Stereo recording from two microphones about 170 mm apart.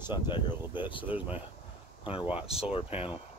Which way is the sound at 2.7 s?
35° left (ahead or behind).